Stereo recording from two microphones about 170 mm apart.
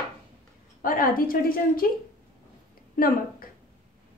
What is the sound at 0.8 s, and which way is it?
A woman's voice, 55° left (ahead or behind).